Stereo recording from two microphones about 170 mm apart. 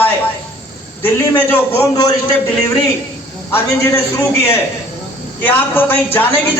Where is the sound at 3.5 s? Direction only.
15° left (ahead or behind).